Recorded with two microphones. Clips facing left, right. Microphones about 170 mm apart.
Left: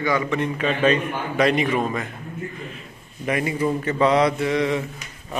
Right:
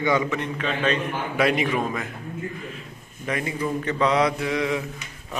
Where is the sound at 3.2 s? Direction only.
10° left (ahead or behind).